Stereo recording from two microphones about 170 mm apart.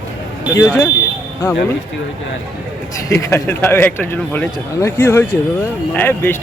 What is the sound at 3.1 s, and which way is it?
Speech, 15° left (ahead or behind).